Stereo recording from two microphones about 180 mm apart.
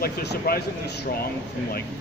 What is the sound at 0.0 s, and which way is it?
Speech, 60° left (ahead or behind).